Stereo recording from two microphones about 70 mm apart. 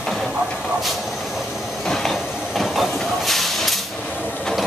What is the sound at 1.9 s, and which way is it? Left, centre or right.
Hiss, centre.